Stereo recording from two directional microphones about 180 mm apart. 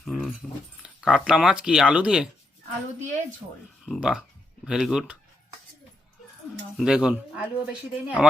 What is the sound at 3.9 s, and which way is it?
Speech, 5° right (ahead or behind).